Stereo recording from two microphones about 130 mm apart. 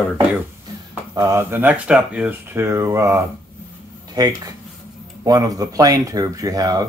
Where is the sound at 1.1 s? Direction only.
25° right (ahead or behind).